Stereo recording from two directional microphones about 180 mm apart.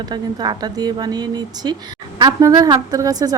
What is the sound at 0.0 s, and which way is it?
A woman's voice, 25° right (ahead or behind).